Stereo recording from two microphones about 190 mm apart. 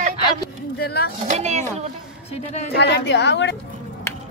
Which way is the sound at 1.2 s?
40° right (ahead or behind).